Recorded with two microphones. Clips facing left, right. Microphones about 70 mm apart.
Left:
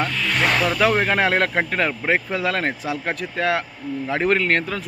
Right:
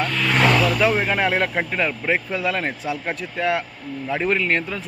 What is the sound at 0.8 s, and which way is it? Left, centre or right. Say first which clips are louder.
Speech: left 1 dB; left.